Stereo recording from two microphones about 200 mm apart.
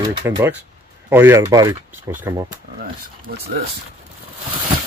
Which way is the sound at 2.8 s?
50° right (ahead or behind).